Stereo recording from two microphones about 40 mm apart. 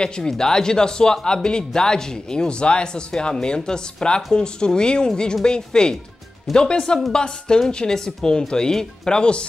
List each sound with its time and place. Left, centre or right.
0.3 s speech: centre